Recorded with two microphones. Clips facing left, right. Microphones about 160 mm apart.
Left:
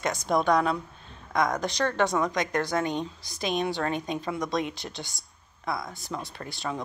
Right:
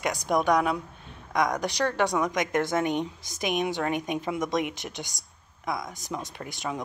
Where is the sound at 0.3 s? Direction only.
15° right (ahead or behind).